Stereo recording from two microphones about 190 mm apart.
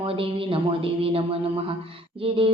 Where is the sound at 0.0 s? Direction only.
30° right (ahead or behind).